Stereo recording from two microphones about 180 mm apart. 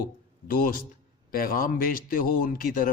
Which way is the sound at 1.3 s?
55° left (ahead or behind).